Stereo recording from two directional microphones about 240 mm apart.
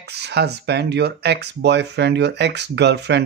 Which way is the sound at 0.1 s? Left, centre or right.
Right.